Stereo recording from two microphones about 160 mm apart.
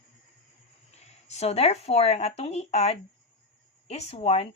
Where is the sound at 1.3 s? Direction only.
40° left (ahead or behind).